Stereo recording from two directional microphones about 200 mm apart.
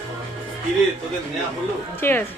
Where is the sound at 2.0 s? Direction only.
10° left (ahead or behind).